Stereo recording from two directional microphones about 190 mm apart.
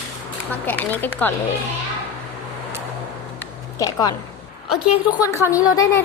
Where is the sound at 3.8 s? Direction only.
20° left (ahead or behind).